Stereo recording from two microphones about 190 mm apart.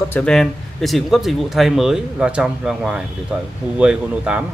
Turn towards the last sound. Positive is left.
turn(degrees=-5)  # may be behind; listen again after turning